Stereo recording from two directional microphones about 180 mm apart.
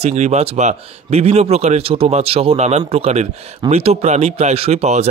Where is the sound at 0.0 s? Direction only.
40° right (ahead or behind).